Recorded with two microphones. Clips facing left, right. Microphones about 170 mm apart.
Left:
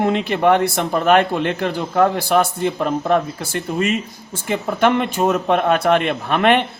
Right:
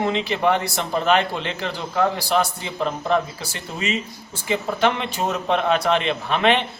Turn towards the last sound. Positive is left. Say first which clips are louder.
# left 4 dB
turn(degrees=55)  # may be behind; listen again after turning